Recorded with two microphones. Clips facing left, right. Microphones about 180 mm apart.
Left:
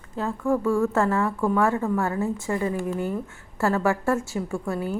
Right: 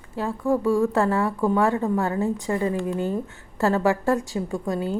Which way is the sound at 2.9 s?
20° right (ahead or behind).